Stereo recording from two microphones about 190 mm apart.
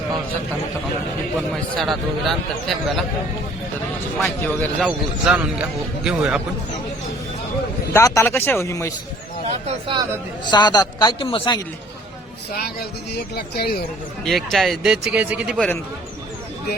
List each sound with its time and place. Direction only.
1.8 s speech: centre (ahead or behind)
4.2 s speech: 10° left (ahead or behind)
4.8 s speech: 5° right (ahead or behind)
7.9 s speech: 15° left (ahead or behind)
9.6 s speech: 25° right (ahead or behind)
10.4 s a man's voice: 25° left (ahead or behind)
12.5 s speech: 55° left (ahead or behind)
14.3 s speech: centre (ahead or behind)
15.5 s speech: 5° left (ahead or behind)